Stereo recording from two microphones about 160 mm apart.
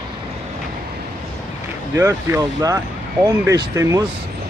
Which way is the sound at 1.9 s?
15° right (ahead or behind).